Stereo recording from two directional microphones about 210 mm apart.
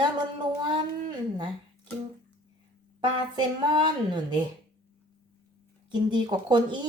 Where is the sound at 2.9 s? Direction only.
20° right (ahead or behind).